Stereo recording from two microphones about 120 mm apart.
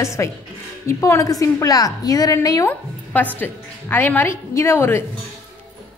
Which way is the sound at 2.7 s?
15° left (ahead or behind).